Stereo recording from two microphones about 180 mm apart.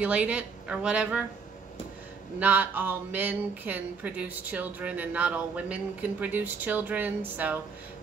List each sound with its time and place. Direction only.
0.0 s speech: 5° right (ahead or behind)
2.3 s speech: 10° right (ahead or behind)